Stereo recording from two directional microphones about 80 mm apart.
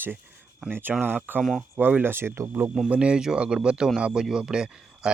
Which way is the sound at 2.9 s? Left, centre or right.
Centre.